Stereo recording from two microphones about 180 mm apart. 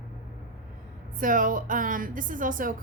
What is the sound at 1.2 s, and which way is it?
A woman's voice, 50° right (ahead or behind).